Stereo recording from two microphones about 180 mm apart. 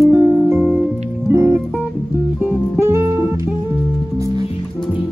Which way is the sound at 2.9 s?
15° right (ahead or behind).